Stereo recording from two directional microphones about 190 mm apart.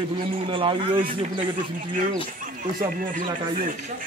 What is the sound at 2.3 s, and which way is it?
Speech, 45° right (ahead or behind).